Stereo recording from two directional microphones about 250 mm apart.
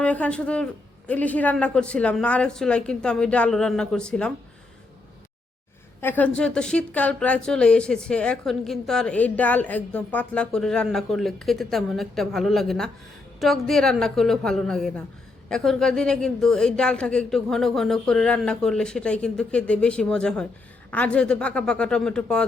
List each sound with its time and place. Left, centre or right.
0.0 s speech: centre
6.0 s speech: centre